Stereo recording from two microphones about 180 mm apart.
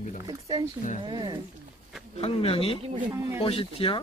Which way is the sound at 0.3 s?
20° right (ahead or behind).